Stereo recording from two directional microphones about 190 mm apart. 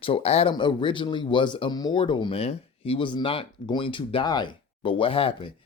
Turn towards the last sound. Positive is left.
turn(degrees=30)  # may be behind; listen again after turning